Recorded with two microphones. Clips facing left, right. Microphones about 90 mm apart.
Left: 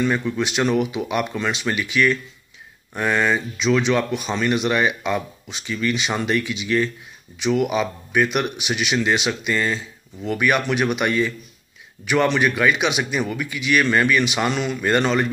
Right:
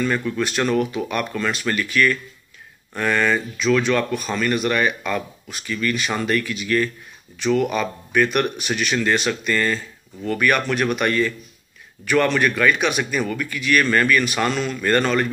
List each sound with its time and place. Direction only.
0.0 s speech: 15° left (ahead or behind)